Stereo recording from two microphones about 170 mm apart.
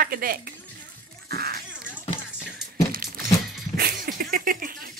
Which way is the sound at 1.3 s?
65° right (ahead or behind).